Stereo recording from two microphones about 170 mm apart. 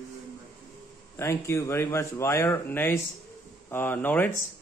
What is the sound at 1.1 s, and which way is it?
Speech, 15° left (ahead or behind).